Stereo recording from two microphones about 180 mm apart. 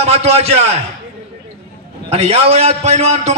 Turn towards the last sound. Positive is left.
turn(degrees=-40)  # may be behind; listen again after turning